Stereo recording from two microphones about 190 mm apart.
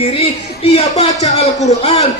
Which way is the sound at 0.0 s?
30° left (ahead or behind).